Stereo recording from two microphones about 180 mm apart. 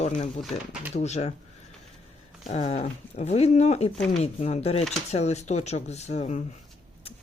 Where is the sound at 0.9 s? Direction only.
40° left (ahead or behind).